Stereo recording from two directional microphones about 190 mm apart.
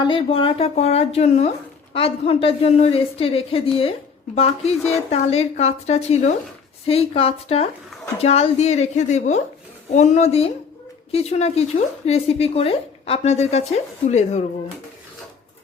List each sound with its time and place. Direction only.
0.0 s speech: 30° left (ahead or behind)